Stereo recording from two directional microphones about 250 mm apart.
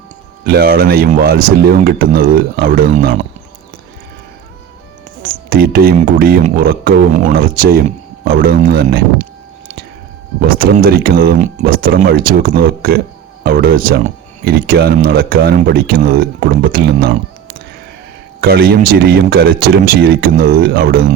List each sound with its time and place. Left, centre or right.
0.4 s speech: right
5.2 s speech: right
10.4 s speech: right
18.3 s speech: right